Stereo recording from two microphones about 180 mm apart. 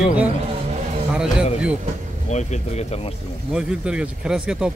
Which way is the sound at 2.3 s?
40° left (ahead or behind).